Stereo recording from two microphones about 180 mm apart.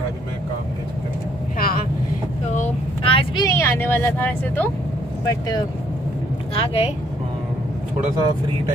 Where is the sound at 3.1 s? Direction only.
20° left (ahead or behind).